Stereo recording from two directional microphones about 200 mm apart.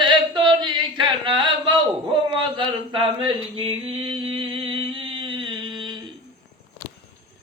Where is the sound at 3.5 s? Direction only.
25° right (ahead or behind).